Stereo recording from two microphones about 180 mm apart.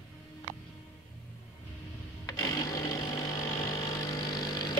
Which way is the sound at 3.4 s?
25° left (ahead or behind).